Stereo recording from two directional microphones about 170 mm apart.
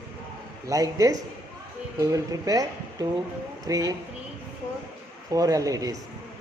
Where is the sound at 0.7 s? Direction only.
20° right (ahead or behind).